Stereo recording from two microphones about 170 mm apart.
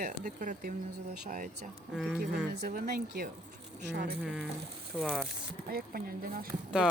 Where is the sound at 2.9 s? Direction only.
70° right (ahead or behind).